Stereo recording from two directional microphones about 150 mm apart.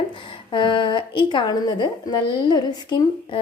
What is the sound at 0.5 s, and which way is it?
A woman's voice, 35° left (ahead or behind).